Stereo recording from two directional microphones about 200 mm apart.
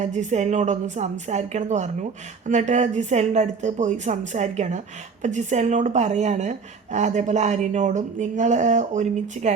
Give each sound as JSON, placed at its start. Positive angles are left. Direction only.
{"t": 0.0, "sound": "speech", "side_deg": -35}